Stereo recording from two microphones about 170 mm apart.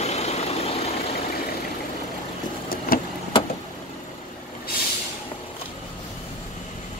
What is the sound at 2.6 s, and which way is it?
Vehicle, 60° left (ahead or behind).